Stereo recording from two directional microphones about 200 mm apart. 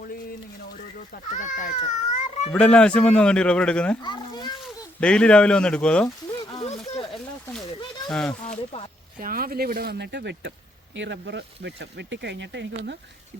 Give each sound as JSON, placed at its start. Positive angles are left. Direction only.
{"t": 1.1, "sound": "speech", "side_deg": 40}
{"t": 2.5, "sound": "speech", "side_deg": 5}
{"t": 4.0, "sound": "children playing", "side_deg": 20}
{"t": 4.9, "sound": "speech", "side_deg": 5}
{"t": 6.6, "sound": "a sound", "side_deg": 30}
{"t": 8.1, "sound": "speech", "side_deg": 5}
{"t": 9.1, "sound": "speech", "side_deg": -45}